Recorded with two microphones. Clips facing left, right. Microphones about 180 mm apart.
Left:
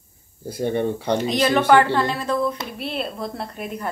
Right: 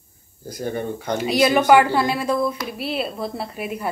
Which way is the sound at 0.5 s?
30° left (ahead or behind).